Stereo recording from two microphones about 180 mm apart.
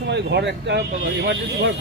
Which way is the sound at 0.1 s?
70° right (ahead or behind).